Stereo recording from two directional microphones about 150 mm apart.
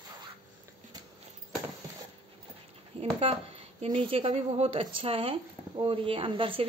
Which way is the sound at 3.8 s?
35° right (ahead or behind).